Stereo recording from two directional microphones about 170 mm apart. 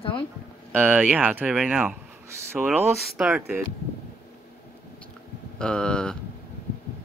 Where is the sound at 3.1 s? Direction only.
5° right (ahead or behind).